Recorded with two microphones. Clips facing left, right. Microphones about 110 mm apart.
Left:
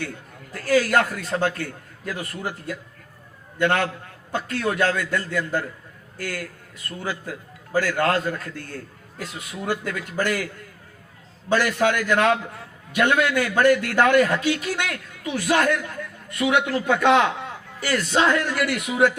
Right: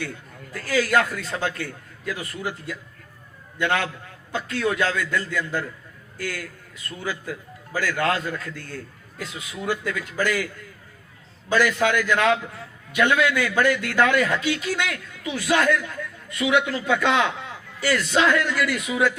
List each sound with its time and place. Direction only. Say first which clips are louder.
0.5 s a man's voice: left 2 dB; 45° left (ahead or behind)
18.5 s a man's voice: even; 60° left (ahead or behind)